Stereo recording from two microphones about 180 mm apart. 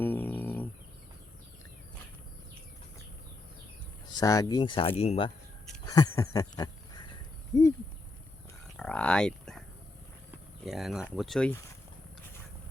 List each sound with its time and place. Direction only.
0.0 s a sound: 10° left (ahead or behind)
4.1 s speech: 20° left (ahead or behind)
5.8 s speech: 20° left (ahead or behind)
8.7 s speech: 5° left (ahead or behind)
10.7 s speech: centre (ahead or behind)